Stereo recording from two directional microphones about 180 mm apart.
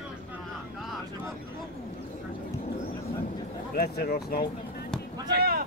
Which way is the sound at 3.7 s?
60° left (ahead or behind).